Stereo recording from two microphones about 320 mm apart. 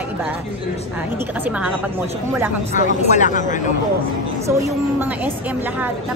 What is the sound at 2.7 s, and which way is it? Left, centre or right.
Speech, left.